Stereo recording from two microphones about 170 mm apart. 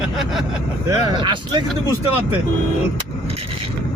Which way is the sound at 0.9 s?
30° right (ahead or behind).